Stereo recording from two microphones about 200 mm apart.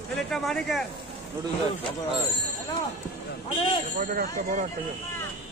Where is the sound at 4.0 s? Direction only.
45° right (ahead or behind).